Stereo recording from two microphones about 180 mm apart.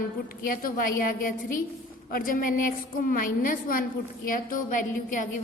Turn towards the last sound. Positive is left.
turn(degrees=45)  # may be behind; listen again after turning